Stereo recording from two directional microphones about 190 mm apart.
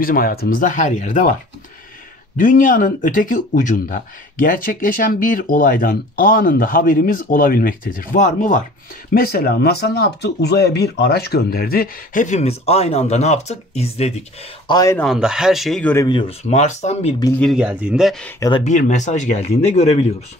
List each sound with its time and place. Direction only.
0.0 s speech: 50° left (ahead or behind)
2.3 s speech: 45° left (ahead or behind)
9.1 s speech: 50° left (ahead or behind); by 14.2 s 35° left (ahead or behind)
14.7 s speech: 20° left (ahead or behind)
15.0 s speech: centre (ahead or behind)
16.1 s speech: 30° left (ahead or behind)
17.4 s speech: centre (ahead or behind)
18.6 s speech: 40° left (ahead or behind)